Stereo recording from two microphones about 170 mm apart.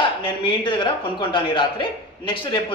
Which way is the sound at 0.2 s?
30° left (ahead or behind).